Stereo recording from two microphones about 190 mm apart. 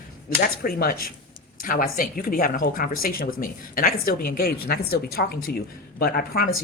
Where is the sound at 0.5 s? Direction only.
50° left (ahead or behind).